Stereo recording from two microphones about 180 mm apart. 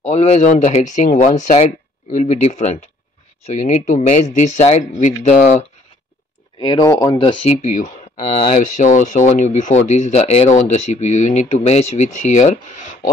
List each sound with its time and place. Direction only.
0.0 s speech: 35° left (ahead or behind)
6.6 s speech: 25° left (ahead or behind); by 13.1 s 40° left (ahead or behind)